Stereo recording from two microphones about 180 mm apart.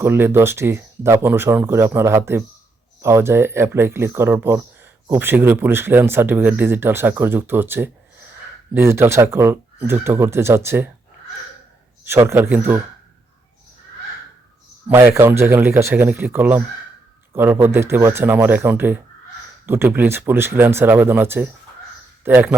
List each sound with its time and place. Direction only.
0.0 s speech: 10° right (ahead or behind)
12.0 s speech: 15° right (ahead or behind)
14.8 s speech: 15° right (ahead or behind)